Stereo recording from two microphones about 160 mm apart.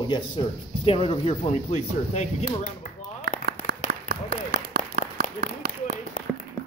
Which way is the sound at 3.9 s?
65° right (ahead or behind).